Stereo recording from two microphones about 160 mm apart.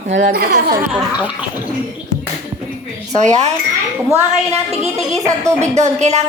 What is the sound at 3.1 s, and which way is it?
Speech, 45° right (ahead or behind).